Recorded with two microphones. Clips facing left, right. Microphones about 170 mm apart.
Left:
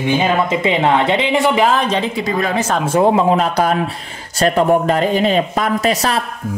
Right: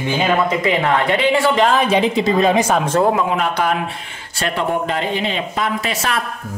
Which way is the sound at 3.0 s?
30° left (ahead or behind).